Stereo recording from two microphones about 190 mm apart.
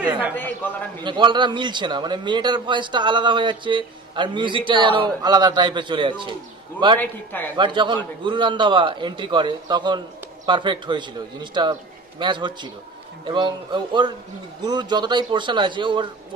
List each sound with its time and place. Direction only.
1.0 s a man's voice: 25° right (ahead or behind)
7.0 s a man's voice: 10° left (ahead or behind)
7.5 s a man's voice: 25° right (ahead or behind)